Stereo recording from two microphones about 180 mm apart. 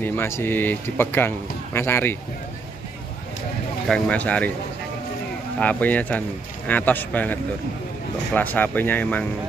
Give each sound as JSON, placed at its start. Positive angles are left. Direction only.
{"t": 0.0, "sound": "speech", "side_deg": 10}
{"t": 3.9, "sound": "speech", "side_deg": 5}
{"t": 5.6, "sound": "speech", "side_deg": 10}